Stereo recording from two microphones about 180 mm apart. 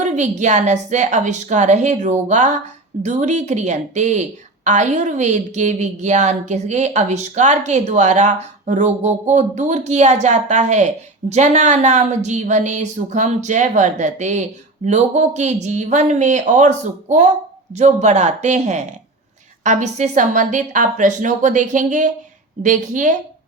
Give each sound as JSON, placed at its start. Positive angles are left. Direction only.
{"t": 0.0, "sound": "a woman's voice", "side_deg": -40}